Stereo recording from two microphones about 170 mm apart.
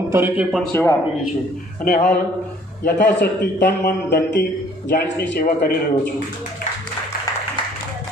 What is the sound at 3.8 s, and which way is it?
Speech, 75° left (ahead or behind).